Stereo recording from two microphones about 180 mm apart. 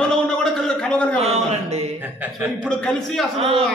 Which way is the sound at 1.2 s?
35° right (ahead or behind).